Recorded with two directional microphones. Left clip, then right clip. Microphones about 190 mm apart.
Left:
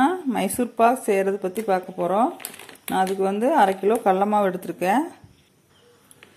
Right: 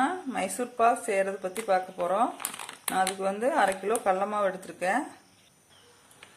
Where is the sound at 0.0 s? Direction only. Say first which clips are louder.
Left 7 dB; 35° left (ahead or behind).